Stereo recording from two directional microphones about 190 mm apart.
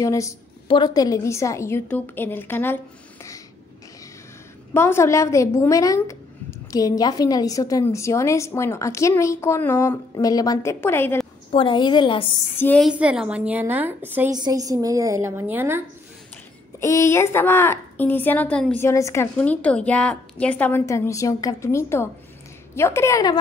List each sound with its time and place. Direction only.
0.0 s a woman's voice: 15° left (ahead or behind)
4.7 s a woman's voice: 15° left (ahead or behind)
11.5 s a woman's voice: 25° left (ahead or behind)
12.5 s a woman's voice: 10° left (ahead or behind)
12.8 s a woman's voice: 5° right (ahead or behind)
16.8 s a woman's voice: 15° left (ahead or behind)